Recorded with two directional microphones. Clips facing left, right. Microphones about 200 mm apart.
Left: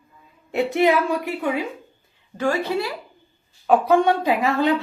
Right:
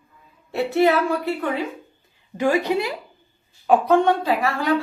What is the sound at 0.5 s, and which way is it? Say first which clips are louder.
Speech: even; 20° left (ahead or behind).